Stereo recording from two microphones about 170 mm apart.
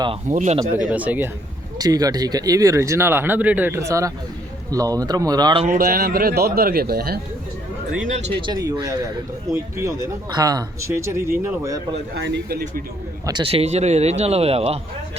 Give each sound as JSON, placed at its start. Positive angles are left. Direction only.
{"t": 0.3, "sound": "speech", "side_deg": -45}
{"t": 0.9, "sound": "speech", "side_deg": -10}
{"t": 1.8, "sound": "speech", "side_deg": -20}
{"t": 5.6, "sound": "a man's voice", "side_deg": -55}
{"t": 8.0, "sound": "speech", "side_deg": -45}
{"t": 8.4, "sound": "speech", "side_deg": -25}
{"t": 12.1, "sound": "speech", "side_deg": -80}
{"t": 13.2, "sound": "a man's voice", "side_deg": -30}